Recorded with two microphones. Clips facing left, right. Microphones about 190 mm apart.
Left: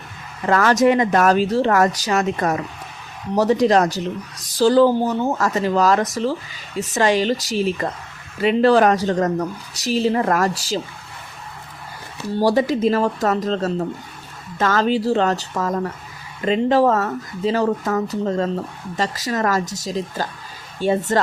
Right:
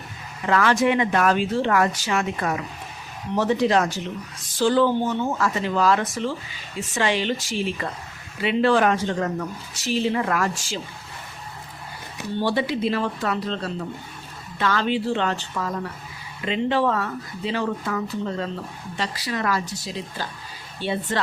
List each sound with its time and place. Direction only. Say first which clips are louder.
0.4 s speech: left 4 dB; 40° left (ahead or behind)
12.3 s speech: left 6 dB; 40° left (ahead or behind)